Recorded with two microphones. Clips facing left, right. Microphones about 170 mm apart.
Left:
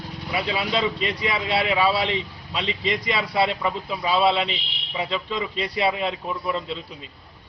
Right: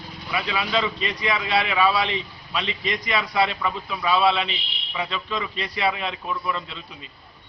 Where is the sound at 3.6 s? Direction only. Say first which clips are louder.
Left 1 dB; 25° left (ahead or behind).